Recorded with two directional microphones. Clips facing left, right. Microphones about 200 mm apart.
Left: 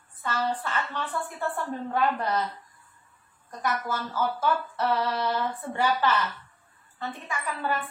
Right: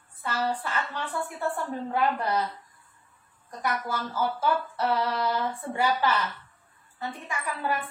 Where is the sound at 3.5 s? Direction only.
10° right (ahead or behind).